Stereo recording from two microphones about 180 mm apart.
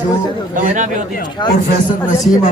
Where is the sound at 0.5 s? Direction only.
45° right (ahead or behind).